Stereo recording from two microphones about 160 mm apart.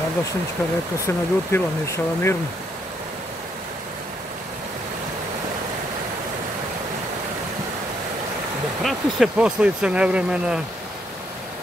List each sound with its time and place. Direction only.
1.0 s speech: 15° left (ahead or behind)
8.8 s speech: 5° right (ahead or behind)